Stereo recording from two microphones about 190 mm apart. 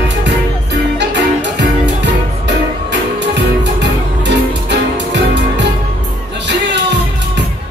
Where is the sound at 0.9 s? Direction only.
65° right (ahead or behind).